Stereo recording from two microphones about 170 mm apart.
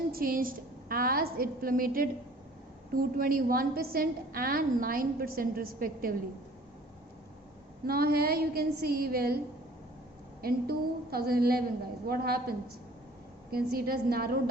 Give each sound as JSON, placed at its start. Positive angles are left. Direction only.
{"t": 0.1, "sound": "a woman's voice", "side_deg": -55}
{"t": 7.9, "sound": "a woman's voice", "side_deg": -65}
{"t": 10.4, "sound": "a woman's voice", "side_deg": -65}